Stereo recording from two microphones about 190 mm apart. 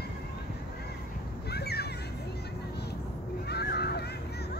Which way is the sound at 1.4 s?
55° left (ahead or behind).